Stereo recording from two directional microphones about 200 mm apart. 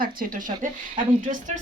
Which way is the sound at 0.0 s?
45° right (ahead or behind).